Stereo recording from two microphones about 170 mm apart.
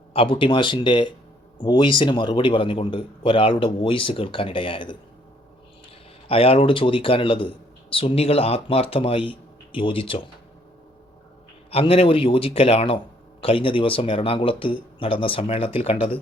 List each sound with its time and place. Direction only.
0.1 s a man's voice: 30° left (ahead or behind)
6.2 s a man's voice: 35° left (ahead or behind)
11.7 s a man's voice: 35° left (ahead or behind)